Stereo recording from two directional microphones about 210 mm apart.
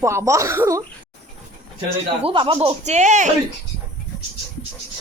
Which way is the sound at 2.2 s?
25° right (ahead or behind).